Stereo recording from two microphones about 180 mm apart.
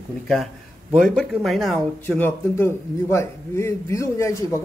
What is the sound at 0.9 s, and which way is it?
Speech, centre (ahead or behind).